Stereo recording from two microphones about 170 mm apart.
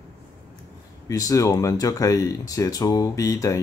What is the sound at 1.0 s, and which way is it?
Speech, 20° left (ahead or behind).